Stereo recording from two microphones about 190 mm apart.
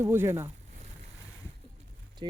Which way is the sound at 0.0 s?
15° right (ahead or behind).